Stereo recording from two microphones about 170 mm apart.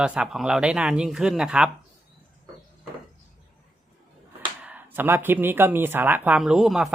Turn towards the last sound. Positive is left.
turn(degrees=-5)  # may be behind; listen again after turning